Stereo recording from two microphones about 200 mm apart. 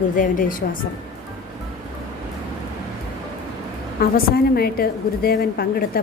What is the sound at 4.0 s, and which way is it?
A woman's voice, 50° left (ahead or behind).